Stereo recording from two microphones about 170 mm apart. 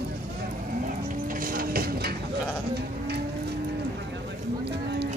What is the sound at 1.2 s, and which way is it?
Livestock, 55° right (ahead or behind).